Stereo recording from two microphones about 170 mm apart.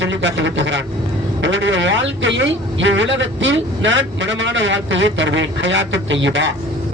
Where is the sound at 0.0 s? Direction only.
90° right.